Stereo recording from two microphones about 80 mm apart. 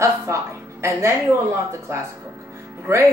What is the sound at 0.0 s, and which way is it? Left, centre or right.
A woman's voice, right.